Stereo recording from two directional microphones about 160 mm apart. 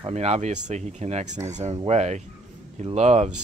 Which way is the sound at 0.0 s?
40° right (ahead or behind).